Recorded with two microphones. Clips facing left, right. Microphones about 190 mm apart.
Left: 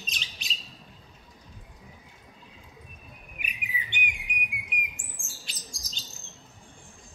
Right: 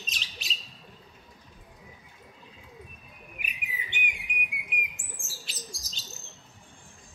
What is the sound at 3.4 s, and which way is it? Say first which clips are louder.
Bird: left 2 dB; centre (ahead or behind).